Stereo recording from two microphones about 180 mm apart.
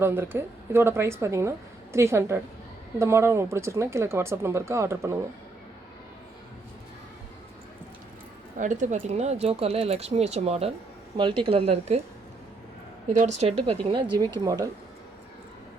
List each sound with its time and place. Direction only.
0.0 s a woman's voice: 15° right (ahead or behind)
8.5 s speech: 45° right (ahead or behind)
13.1 s speech: 40° right (ahead or behind); by 14.7 s 20° right (ahead or behind)